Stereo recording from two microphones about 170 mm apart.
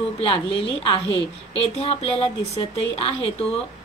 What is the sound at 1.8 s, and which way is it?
A woman's voice, 35° left (ahead or behind).